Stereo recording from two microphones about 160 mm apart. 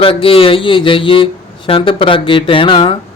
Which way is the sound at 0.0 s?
35° left (ahead or behind).